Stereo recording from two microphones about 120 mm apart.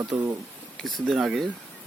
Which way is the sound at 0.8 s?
Centre (ahead or behind).